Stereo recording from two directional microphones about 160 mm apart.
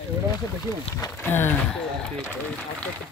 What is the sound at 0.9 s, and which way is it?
Speech, 15° left (ahead or behind).